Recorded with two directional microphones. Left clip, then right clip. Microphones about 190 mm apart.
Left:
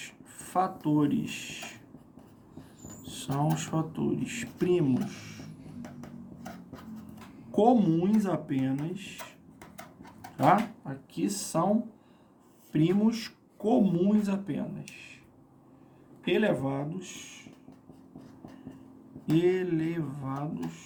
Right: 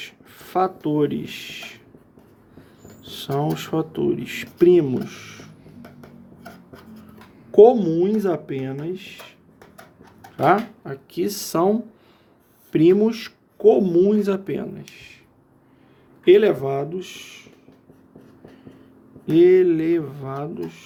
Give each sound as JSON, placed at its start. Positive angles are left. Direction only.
{"t": 0.0, "sound": "a sound", "side_deg": -35}
{"t": 3.1, "sound": "speech", "side_deg": -35}
{"t": 7.5, "sound": "speech", "side_deg": -30}
{"t": 10.3, "sound": "speech", "side_deg": -35}
{"t": 11.1, "sound": "speech", "side_deg": -55}
{"t": 12.7, "sound": "speech", "side_deg": -45}
{"t": 14.9, "sound": "a sound", "side_deg": -50}
{"t": 16.2, "sound": "speech", "side_deg": -50}
{"t": 19.2, "sound": "speech", "side_deg": -40}